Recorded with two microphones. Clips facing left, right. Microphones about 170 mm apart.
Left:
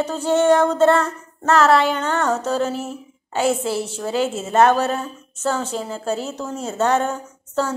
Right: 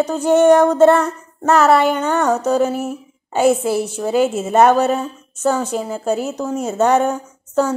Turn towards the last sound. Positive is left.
turn(degrees=-15)  # may be behind; listen again after turning